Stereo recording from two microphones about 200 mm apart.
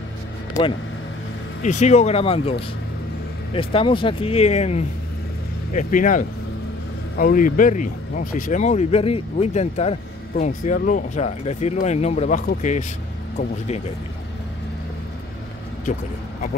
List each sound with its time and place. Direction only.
1.6 s speech: 35° left (ahead or behind)
3.5 s speech: 25° left (ahead or behind)